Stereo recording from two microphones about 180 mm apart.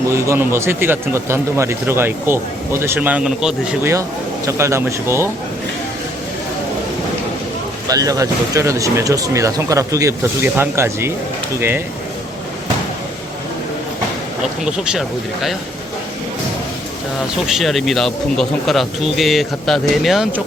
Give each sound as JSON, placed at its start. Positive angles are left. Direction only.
{"t": 0.1, "sound": "speech", "side_deg": -15}
{"t": 4.4, "sound": "speech", "side_deg": -15}
{"t": 7.9, "sound": "speech", "side_deg": -20}
{"t": 14.6, "sound": "speech", "side_deg": -5}
{"t": 17.4, "sound": "speech", "side_deg": 0}